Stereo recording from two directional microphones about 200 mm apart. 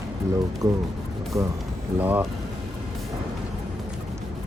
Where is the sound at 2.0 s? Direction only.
10° right (ahead or behind).